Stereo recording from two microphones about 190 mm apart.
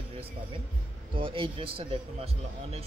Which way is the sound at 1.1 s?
30° right (ahead or behind).